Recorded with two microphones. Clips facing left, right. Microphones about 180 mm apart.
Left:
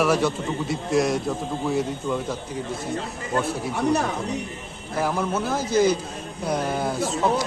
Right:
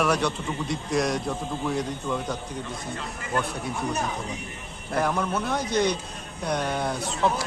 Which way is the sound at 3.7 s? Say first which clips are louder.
Left 8 dB; 70° left (ahead or behind).